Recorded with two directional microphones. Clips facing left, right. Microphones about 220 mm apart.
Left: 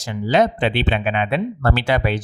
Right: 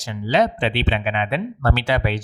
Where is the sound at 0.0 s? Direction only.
50° left (ahead or behind).